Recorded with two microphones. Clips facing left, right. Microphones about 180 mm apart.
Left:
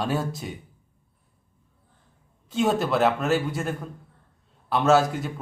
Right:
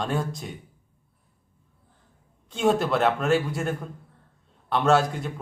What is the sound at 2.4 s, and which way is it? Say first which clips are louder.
Speech: right 1 dB; centre (ahead or behind).